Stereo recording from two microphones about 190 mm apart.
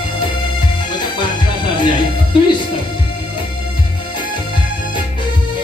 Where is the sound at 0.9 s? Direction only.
25° left (ahead or behind).